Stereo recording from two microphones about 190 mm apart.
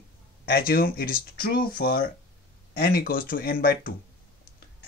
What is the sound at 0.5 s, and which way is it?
Speech, 50° left (ahead or behind).